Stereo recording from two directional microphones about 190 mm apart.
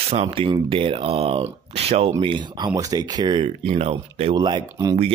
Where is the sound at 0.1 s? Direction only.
30° right (ahead or behind).